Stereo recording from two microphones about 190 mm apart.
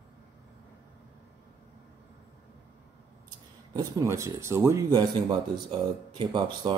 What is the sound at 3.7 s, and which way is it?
Speech, 15° right (ahead or behind).